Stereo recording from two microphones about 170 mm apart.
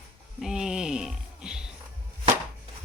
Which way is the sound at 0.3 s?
5° right (ahead or behind).